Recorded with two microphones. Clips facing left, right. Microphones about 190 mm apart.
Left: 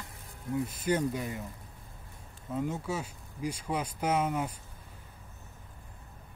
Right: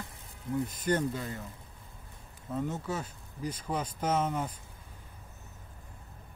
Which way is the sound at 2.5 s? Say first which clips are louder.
Left 1 dB; 10° left (ahead or behind).